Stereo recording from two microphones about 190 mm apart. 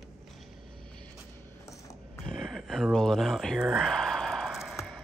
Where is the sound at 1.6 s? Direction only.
15° left (ahead or behind).